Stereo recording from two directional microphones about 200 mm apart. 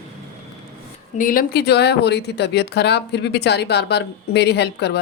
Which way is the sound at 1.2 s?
45° left (ahead or behind).